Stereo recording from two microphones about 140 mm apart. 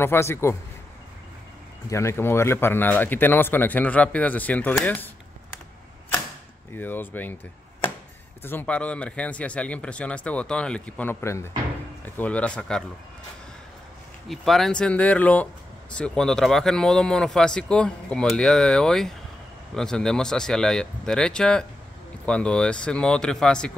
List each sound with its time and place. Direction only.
0.0 s a man's voice: 15° left (ahead or behind)
1.9 s speech: 20° left (ahead or behind)
6.7 s speech: 15° left (ahead or behind)
8.4 s speech: 15° left (ahead or behind)
14.3 s speech: centre (ahead or behind)